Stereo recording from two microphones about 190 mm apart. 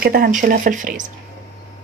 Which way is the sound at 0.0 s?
50° right (ahead or behind).